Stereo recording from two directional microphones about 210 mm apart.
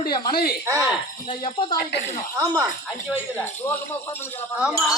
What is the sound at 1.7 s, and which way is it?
Speech, 50° left (ahead or behind).